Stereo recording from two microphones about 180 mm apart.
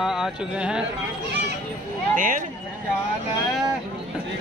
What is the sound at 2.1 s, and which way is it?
Speech, 50° right (ahead or behind).